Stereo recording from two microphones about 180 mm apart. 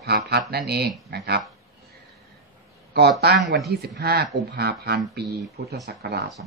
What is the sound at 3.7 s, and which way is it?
Speech, 65° right (ahead or behind).